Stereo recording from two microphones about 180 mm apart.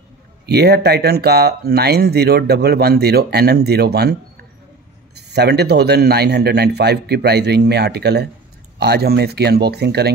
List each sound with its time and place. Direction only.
0.5 s speech: 65° right (ahead or behind)